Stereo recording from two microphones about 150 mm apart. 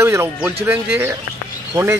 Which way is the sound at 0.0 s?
15° right (ahead or behind).